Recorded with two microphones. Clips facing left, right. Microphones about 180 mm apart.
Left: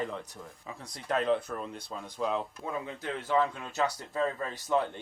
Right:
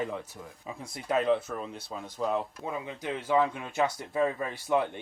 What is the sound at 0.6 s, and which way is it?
Speech, 15° right (ahead or behind).